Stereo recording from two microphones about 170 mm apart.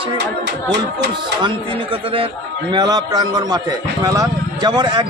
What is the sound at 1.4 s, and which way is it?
Music, 30° right (ahead or behind).